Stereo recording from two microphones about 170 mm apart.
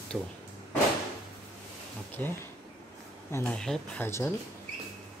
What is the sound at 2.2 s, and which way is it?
A man's voice, 10° left (ahead or behind).